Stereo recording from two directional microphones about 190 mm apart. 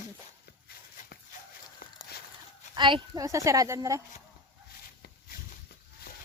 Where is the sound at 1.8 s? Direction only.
50° left (ahead or behind).